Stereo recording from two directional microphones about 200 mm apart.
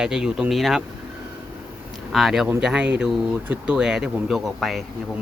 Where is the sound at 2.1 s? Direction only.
Centre (ahead or behind).